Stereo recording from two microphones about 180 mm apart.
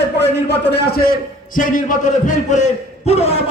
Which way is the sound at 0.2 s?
65° left (ahead or behind).